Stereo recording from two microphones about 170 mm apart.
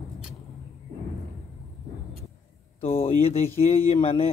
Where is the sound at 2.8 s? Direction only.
35° left (ahead or behind).